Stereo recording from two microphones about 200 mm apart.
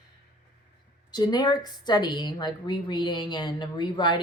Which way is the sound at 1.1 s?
20° left (ahead or behind).